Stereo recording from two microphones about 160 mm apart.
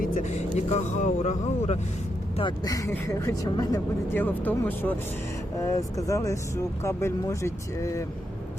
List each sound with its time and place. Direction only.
0.0 s speech: 55° left (ahead or behind)
2.4 s speech: 20° left (ahead or behind)
4.1 s speech: 10° left (ahead or behind)